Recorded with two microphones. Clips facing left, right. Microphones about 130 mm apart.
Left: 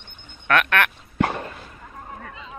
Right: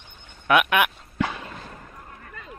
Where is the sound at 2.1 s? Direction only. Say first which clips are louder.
Left 7 dB; 90° left.